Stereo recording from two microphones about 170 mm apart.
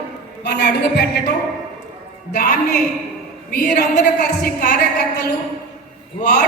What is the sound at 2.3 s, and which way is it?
Speech, 50° left (ahead or behind).